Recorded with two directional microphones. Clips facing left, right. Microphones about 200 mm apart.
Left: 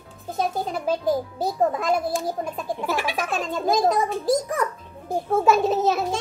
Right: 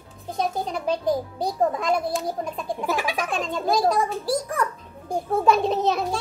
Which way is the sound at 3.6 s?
20° left (ahead or behind).